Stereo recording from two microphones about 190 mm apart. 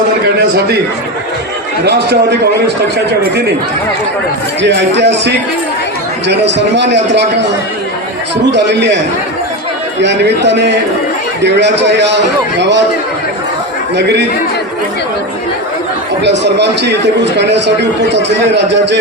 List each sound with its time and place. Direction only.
1.8 s a man's voice: 60° right (ahead or behind)
4.6 s a man's voice: 65° right (ahead or behind)
8.5 s a man's voice: 65° right (ahead or behind)
10.0 s a man's voice: 65° right (ahead or behind)
16.2 s a man's voice: 65° right (ahead or behind)